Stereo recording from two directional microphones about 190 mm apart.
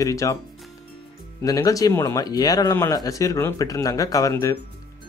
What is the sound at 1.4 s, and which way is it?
A man's voice, 15° left (ahead or behind).